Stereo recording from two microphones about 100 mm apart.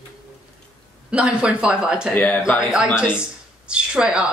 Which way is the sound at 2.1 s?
15° left (ahead or behind).